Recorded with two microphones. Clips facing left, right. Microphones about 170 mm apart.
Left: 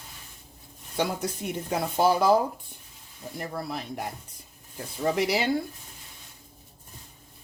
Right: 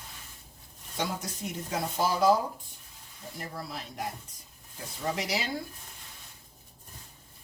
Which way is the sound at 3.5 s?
60° left (ahead or behind).